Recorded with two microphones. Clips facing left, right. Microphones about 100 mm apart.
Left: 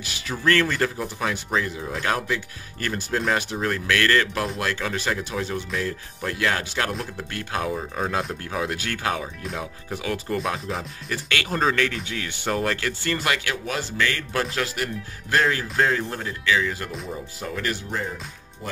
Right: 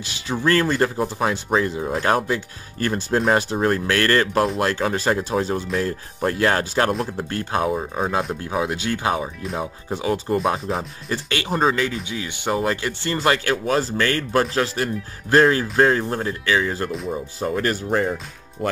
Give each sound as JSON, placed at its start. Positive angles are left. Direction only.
{"t": 0.0, "sound": "speech", "side_deg": -25}